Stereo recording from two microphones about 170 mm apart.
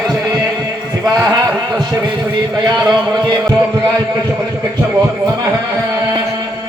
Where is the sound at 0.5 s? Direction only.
15° right (ahead or behind).